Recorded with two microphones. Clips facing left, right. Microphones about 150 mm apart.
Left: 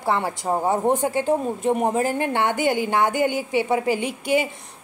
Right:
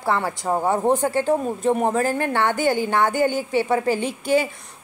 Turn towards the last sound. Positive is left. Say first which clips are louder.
# right 1 dB
turn(degrees=15)  # may be behind; listen again after turning